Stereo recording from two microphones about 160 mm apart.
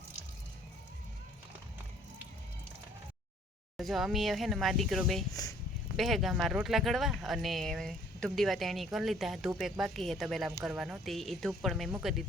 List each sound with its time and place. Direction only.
3.8 s speech: centre (ahead or behind)
5.3 s speech: 20° left (ahead or behind)
6.0 s speech: centre (ahead or behind)